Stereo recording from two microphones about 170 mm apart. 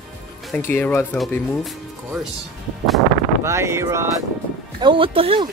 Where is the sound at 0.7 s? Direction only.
10° left (ahead or behind).